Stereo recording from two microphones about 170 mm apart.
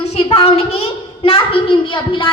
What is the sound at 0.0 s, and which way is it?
A woman's voice, 35° left (ahead or behind).